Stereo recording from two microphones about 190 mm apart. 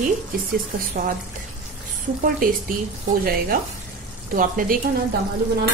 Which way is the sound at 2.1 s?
45° right (ahead or behind).